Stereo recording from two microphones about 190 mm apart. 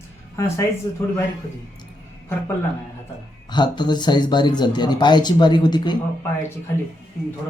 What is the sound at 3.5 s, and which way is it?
A man's voice, 25° left (ahead or behind).